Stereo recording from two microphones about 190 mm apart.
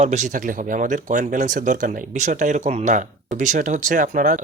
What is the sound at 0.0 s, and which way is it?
Speech, 40° right (ahead or behind).